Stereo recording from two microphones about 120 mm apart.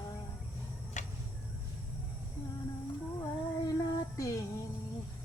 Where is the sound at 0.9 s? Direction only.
90° left.